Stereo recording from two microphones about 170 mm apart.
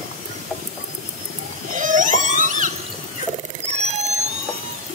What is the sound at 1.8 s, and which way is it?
Theremin, 50° right (ahead or behind).